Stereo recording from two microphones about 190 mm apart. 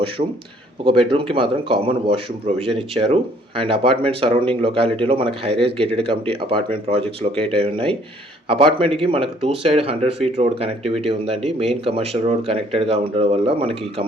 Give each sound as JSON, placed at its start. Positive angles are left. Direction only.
{"t": 0.2, "sound": "speech", "side_deg": -30}